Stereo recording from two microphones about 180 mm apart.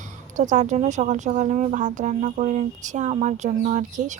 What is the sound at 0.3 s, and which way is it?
A woman's voice, 45° right (ahead or behind).